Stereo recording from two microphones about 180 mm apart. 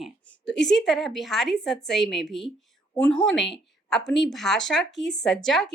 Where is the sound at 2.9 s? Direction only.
10° left (ahead or behind).